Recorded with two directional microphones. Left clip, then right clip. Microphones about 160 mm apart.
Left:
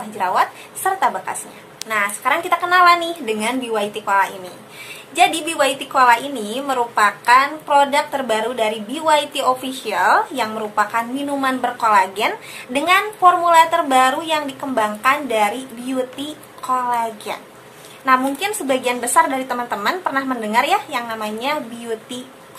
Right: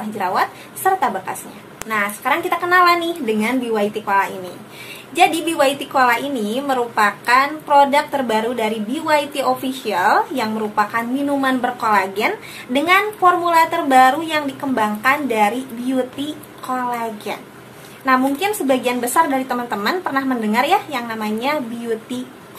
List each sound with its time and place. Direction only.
0.2 s a woman's voice: 5° left (ahead or behind)
16.6 s a woman's voice: 5° left (ahead or behind)